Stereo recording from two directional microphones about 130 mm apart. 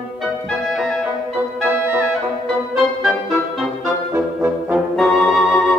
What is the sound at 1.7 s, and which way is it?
Music, 15° right (ahead or behind).